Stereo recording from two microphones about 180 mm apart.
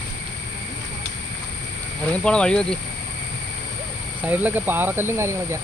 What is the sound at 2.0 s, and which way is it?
Speech, 5° left (ahead or behind).